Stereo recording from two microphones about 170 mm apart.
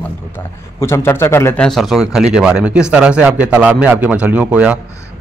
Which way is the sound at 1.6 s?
Centre (ahead or behind).